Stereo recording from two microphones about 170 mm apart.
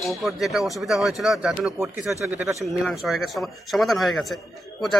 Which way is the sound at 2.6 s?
Centre (ahead or behind).